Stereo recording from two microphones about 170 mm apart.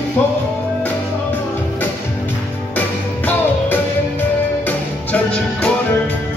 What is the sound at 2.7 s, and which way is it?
Music, 10° left (ahead or behind).